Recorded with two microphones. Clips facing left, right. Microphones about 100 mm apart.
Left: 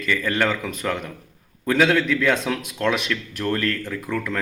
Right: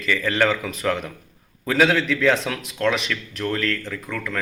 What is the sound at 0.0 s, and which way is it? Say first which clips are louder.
A man's voice: right 1 dB; centre (ahead or behind).